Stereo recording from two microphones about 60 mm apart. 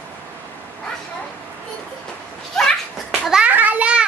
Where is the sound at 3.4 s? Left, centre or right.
Right.